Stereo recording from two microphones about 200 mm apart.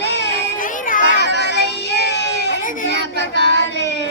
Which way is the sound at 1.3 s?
60° left (ahead or behind).